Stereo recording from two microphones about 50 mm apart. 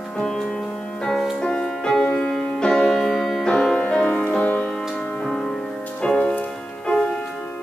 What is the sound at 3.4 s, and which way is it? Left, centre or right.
Music, centre.